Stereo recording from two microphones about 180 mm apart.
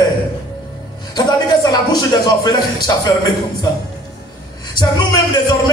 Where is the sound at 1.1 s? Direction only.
20° left (ahead or behind).